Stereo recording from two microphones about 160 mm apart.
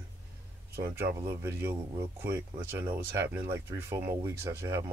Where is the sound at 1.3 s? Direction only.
15° right (ahead or behind).